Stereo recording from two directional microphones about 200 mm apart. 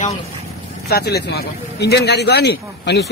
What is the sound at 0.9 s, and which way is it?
A man's voice, 55° left (ahead or behind).